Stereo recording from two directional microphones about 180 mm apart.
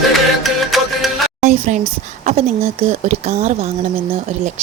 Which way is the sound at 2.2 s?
35° right (ahead or behind).